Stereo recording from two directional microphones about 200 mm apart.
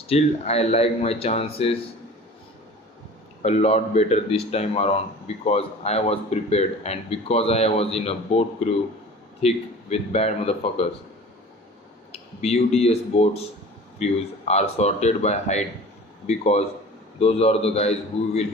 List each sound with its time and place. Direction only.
0.1 s speech: 30° left (ahead or behind)
3.4 s speech: 30° left (ahead or behind)
12.1 s speech: 30° left (ahead or behind)